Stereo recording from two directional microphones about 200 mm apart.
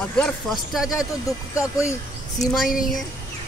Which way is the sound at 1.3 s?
15° left (ahead or behind).